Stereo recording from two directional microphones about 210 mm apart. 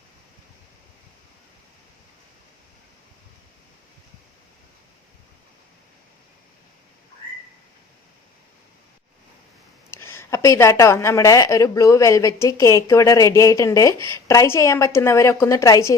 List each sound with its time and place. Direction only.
9.9 s a woman's voice: 10° left (ahead or behind)